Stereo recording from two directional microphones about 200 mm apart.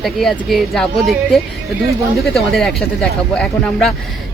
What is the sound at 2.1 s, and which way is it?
Speech, centre (ahead or behind).